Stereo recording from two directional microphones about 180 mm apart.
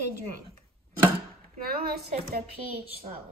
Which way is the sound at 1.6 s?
60° right (ahead or behind).